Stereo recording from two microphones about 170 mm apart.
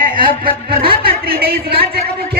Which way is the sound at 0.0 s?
55° right (ahead or behind).